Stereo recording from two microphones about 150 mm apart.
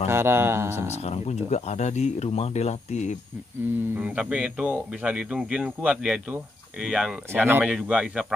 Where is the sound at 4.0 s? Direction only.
10° right (ahead or behind).